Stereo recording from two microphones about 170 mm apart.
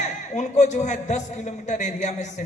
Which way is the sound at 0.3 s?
45° left (ahead or behind).